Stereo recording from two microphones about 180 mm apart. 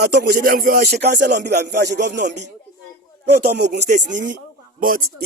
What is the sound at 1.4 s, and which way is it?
Speech, 70° right (ahead or behind).